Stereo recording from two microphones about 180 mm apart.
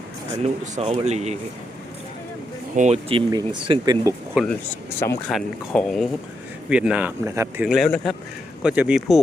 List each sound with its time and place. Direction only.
0.6 s speech: 35° right (ahead or behind)
2.7 s speech: 40° right (ahead or behind)
4.4 s speech: 5° right (ahead or behind)
4.9 s speech: 15° left (ahead or behind)
5.3 s speech: 5° left (ahead or behind); by 7.7 s 15° right (ahead or behind)
7.7 s speech: centre (ahead or behind)